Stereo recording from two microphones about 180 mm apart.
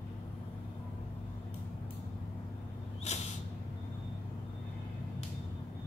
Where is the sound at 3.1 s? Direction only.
40° left (ahead or behind).